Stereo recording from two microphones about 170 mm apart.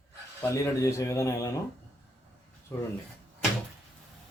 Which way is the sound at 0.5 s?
20° left (ahead or behind).